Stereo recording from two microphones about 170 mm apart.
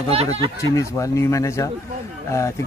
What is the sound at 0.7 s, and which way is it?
Speech, 20° left (ahead or behind).